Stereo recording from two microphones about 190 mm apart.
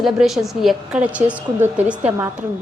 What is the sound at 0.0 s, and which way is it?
A woman's voice, centre (ahead or behind).